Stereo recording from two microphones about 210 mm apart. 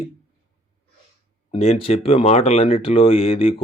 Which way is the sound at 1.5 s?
25° left (ahead or behind).